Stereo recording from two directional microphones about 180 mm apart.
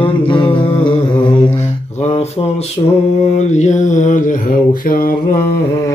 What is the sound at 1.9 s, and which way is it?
Mantra, 35° left (ahead or behind).